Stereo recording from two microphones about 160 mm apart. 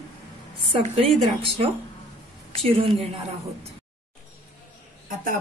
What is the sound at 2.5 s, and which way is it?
Speech, 35° right (ahead or behind).